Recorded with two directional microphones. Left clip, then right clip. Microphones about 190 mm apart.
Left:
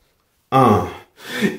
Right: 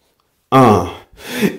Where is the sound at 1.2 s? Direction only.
30° right (ahead or behind).